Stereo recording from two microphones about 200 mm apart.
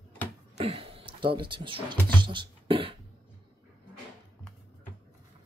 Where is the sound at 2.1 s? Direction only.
25° right (ahead or behind).